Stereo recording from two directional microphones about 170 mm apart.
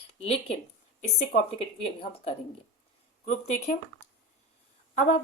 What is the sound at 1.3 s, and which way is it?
Speech, 40° left (ahead or behind).